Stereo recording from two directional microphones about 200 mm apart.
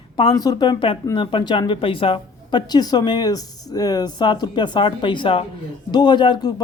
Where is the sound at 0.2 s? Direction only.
25° left (ahead or behind).